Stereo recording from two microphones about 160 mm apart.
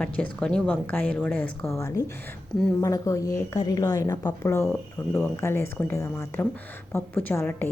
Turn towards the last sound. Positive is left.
turn(degrees=10)  # may be behind; listen again after turning